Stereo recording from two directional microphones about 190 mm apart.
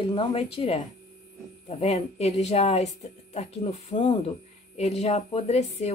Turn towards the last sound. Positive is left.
turn(degrees=35)  # may be behind; listen again after turning